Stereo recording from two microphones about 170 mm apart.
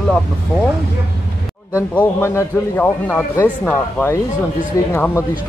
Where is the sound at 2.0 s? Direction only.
15° left (ahead or behind).